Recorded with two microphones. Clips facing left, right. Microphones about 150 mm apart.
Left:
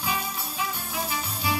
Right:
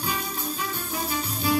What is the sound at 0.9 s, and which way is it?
Music, 40° right (ahead or behind).